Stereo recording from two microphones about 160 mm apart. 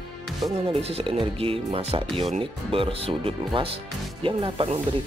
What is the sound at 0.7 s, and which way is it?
Speech, 40° right (ahead or behind).